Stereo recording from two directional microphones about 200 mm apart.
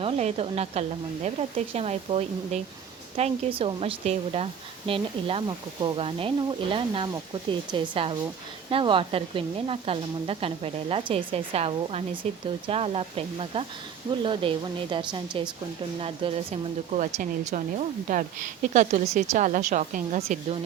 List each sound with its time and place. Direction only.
0.0 s a woman's voice: 30° right (ahead or behind)